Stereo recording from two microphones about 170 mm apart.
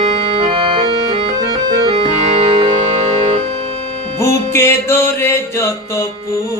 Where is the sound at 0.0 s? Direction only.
35° right (ahead or behind).